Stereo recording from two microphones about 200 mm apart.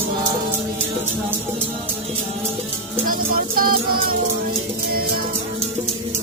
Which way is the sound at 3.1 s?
45° right (ahead or behind).